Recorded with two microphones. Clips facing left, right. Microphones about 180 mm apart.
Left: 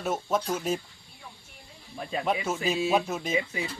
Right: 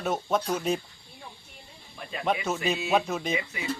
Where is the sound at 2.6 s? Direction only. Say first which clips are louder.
Left 1 dB; centre (ahead or behind).